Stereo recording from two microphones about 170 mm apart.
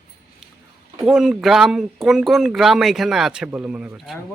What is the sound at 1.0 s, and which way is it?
Speech, 5° right (ahead or behind).